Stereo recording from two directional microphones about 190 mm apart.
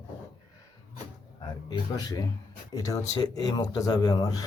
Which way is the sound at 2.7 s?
20° left (ahead or behind).